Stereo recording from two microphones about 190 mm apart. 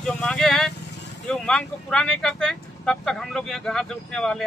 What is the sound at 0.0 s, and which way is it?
Vehicle, 5° left (ahead or behind).